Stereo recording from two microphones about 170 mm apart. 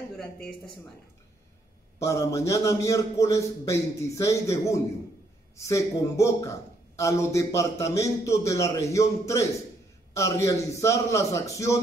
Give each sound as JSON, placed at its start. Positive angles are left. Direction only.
{"t": 2.0, "sound": "a man's voice", "side_deg": 20}